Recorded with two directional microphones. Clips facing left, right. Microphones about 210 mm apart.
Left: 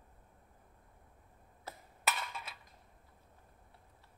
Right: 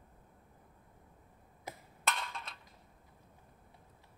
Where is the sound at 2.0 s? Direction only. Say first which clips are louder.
Even; 5° left (ahead or behind).